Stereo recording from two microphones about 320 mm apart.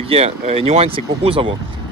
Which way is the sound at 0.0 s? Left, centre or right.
Centre.